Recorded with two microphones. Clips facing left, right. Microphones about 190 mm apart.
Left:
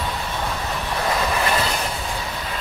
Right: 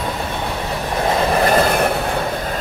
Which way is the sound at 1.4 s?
50° right (ahead or behind).